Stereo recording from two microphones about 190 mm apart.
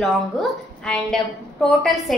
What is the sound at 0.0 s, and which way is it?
A woman's voice, 5° left (ahead or behind).